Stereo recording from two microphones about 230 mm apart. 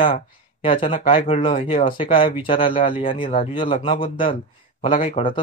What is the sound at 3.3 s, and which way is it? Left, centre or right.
Speech, left.